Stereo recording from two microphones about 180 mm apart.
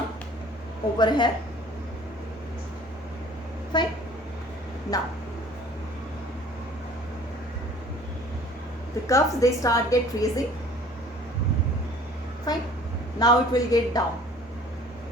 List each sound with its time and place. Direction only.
0.9 s a woman's voice: 25° left (ahead or behind)
3.7 s a woman's voice: 25° left (ahead or behind)
4.9 s a woman's voice: 20° left (ahead or behind)
9.0 s a woman's voice: 15° left (ahead or behind)
12.5 s a woman's voice: 20° left (ahead or behind)